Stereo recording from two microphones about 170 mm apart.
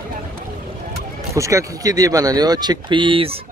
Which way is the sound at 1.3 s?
20° right (ahead or behind).